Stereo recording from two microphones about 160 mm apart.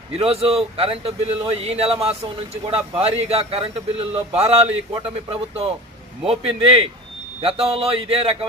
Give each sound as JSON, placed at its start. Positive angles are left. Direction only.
{"t": 0.2, "sound": "a man's voice", "side_deg": -40}